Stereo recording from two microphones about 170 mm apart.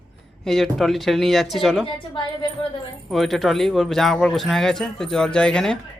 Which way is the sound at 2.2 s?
30° left (ahead or behind).